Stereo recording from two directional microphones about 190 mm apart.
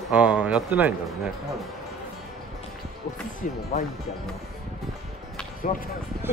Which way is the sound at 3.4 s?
45° left (ahead or behind).